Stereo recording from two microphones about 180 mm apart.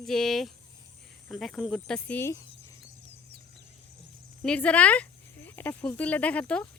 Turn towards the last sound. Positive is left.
turn(degrees=5)  # may be behind; listen again after turning